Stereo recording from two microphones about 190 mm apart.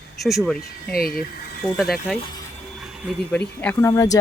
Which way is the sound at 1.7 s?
Centre (ahead or behind).